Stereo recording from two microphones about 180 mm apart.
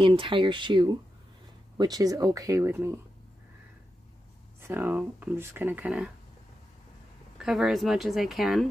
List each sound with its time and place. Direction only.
0.0 s speech: 30° right (ahead or behind)
4.6 s speech: 10° right (ahead or behind)
7.3 s speech: 5° right (ahead or behind)